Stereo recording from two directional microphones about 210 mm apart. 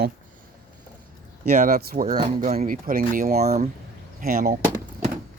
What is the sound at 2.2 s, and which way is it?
Speech, 30° right (ahead or behind).